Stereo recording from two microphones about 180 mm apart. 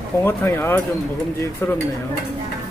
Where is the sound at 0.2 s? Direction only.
10° left (ahead or behind).